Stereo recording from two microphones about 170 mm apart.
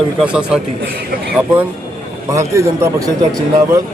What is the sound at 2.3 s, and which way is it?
Speech, 15° right (ahead or behind).